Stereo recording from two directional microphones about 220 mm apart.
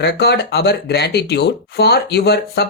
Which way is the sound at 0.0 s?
50° left (ahead or behind).